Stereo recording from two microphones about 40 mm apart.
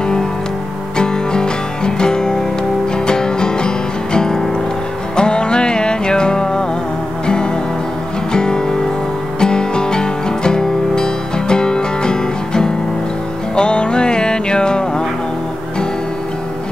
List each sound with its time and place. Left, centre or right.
0.9 s music: centre